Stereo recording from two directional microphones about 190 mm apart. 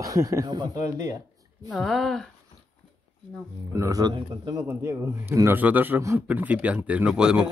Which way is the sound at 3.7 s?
20° right (ahead or behind).